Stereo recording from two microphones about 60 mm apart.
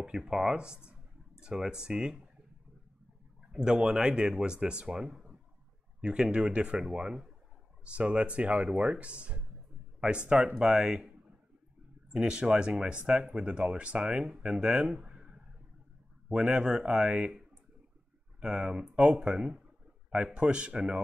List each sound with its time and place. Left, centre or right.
0.0 s speech: centre
3.5 s speech: centre